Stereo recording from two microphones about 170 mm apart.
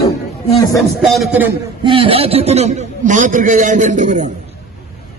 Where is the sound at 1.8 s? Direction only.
30° right (ahead or behind).